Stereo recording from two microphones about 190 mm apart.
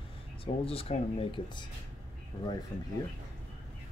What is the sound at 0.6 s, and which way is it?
Speech, 30° left (ahead or behind).